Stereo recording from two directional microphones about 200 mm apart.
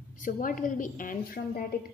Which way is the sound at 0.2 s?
40° left (ahead or behind).